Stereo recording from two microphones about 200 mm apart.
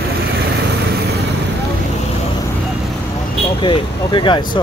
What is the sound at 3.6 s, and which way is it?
Speech, 25° left (ahead or behind).